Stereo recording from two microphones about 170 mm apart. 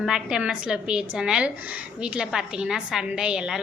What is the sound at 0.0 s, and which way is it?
A woman's voice, 5° right (ahead or behind).